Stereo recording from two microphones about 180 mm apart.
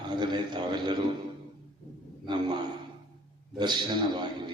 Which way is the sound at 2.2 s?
25° right (ahead or behind).